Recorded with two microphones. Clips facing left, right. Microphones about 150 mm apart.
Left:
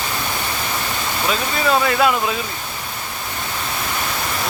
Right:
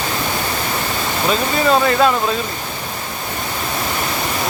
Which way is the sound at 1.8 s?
5° left (ahead or behind).